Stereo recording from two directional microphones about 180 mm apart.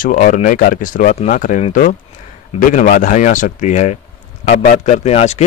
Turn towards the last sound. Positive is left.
turn(degrees=40)  # may be behind; listen again after turning